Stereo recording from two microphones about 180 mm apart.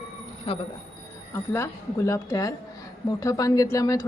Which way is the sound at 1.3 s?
15° left (ahead or behind).